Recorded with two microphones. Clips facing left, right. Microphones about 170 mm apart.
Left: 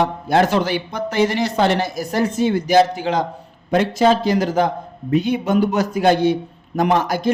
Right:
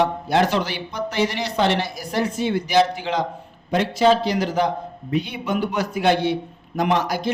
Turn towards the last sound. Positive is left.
turn(degrees=50)  # may be behind; listen again after turning